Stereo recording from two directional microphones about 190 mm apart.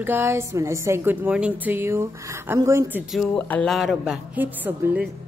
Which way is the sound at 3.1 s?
5° left (ahead or behind).